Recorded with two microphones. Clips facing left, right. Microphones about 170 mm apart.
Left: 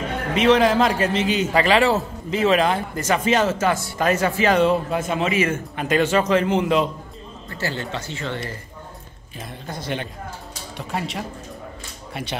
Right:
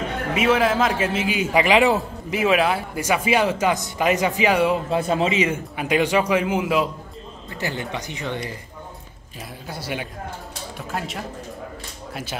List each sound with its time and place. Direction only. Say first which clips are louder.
0.3 s a man's voice: left 3 dB; 5° right (ahead or behind)
4.9 s a man's voice: right 2 dB; 35° right (ahead or behind)
5.3 s a man's voice: even; 15° right (ahead or behind)
9.7 s a man's voice: left 1 dB; 10° right (ahead or behind)